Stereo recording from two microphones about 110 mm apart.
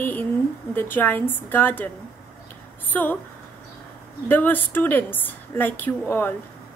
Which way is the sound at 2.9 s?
15° left (ahead or behind).